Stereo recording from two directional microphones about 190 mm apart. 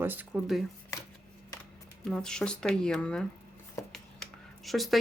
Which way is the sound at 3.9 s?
Centre (ahead or behind).